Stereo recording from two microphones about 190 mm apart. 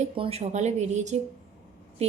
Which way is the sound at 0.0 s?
35° right (ahead or behind).